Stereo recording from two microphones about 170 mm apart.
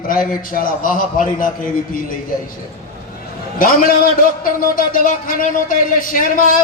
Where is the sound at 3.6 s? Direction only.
55° left (ahead or behind).